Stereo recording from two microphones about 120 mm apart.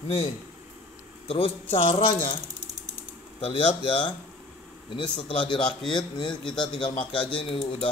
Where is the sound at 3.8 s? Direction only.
45° left (ahead or behind).